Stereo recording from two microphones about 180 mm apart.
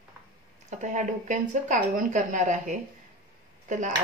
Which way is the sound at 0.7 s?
45° right (ahead or behind).